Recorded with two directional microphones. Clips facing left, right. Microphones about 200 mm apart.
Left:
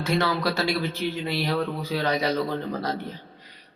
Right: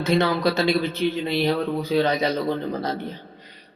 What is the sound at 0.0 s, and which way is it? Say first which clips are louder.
A man's voice: right 4 dB; 20° right (ahead or behind).